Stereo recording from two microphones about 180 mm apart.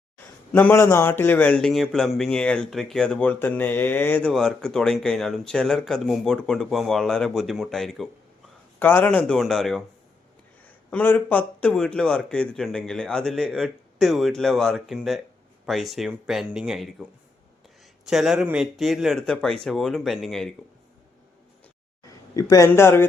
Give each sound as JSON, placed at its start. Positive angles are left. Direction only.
{"t": 0.5, "sound": "speech", "side_deg": 10}
{"t": 10.9, "sound": "speech", "side_deg": 10}
{"t": 22.0, "sound": "speech", "side_deg": 20}